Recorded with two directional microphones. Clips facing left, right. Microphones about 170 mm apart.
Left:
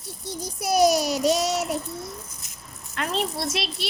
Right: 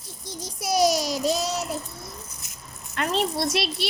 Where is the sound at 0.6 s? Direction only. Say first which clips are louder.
Left 2 dB; 55° left (ahead or behind); by 1.8 s 75° left (ahead or behind).